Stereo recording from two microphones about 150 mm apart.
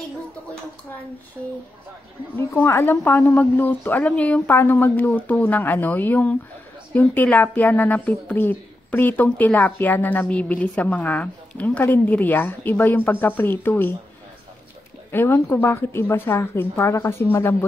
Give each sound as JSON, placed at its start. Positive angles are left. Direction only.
{"t": 2.3, "sound": "a woman's voice", "side_deg": 15}
{"t": 15.0, "sound": "a woman's voice", "side_deg": 15}